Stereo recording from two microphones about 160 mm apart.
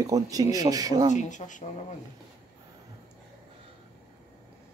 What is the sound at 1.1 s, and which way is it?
Speech, 50° left (ahead or behind).